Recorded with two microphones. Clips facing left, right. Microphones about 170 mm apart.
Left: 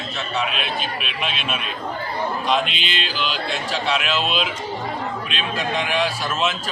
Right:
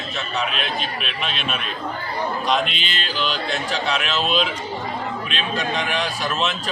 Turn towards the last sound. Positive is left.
turn(degrees=0)  # may be behind; listen again after turning